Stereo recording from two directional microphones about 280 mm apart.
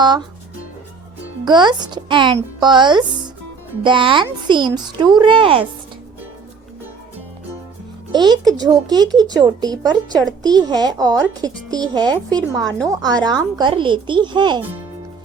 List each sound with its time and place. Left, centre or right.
1.5 s a child's voice: centre
8.1 s a child's voice: centre